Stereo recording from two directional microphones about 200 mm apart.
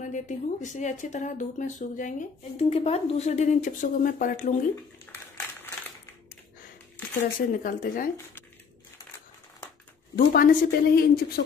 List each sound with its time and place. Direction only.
0.0 s speech: 40° left (ahead or behind)
7.3 s speech: 40° left (ahead or behind)
10.1 s speech: 45° left (ahead or behind)